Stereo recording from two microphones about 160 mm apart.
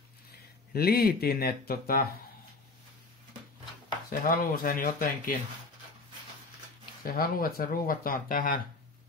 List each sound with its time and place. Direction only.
0.7 s speech: 70° left (ahead or behind)
4.1 s speech: 60° left (ahead or behind)
7.0 s speech: 65° left (ahead or behind)